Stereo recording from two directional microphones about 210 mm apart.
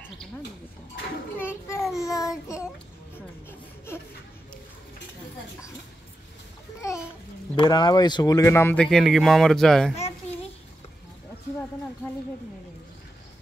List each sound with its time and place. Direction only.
1.4 s speech: 10° left (ahead or behind)
1.8 s child singing: centre (ahead or behind)
2.0 s speech: 15° left (ahead or behind)
3.4 s a sound: 10° left (ahead or behind)
6.8 s a sound: 15° left (ahead or behind)
7.5 s speech: 20° left (ahead or behind); by 9.9 s centre (ahead or behind)